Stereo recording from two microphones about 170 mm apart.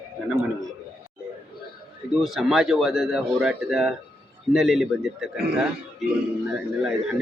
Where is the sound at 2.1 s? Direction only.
Centre (ahead or behind).